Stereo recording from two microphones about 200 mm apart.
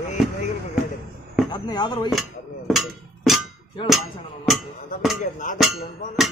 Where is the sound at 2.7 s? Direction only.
Centre (ahead or behind).